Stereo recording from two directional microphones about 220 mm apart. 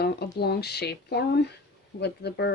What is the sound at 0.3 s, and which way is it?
Speech, 45° left (ahead or behind).